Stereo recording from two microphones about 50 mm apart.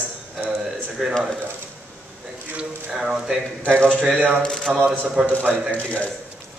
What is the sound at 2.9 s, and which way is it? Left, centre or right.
Speech, centre.